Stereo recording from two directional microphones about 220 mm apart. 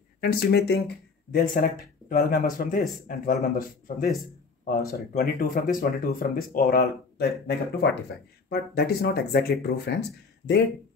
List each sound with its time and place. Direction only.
0.2 s speech: 45° left (ahead or behind)
5.1 s speech: 40° left (ahead or behind)